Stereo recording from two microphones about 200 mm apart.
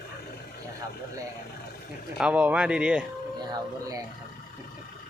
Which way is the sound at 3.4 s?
20° right (ahead or behind).